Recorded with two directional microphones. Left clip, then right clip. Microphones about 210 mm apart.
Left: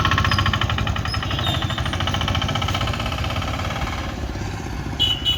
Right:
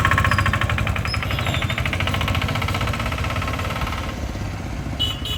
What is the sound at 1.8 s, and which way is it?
Vehicle, 25° right (ahead or behind).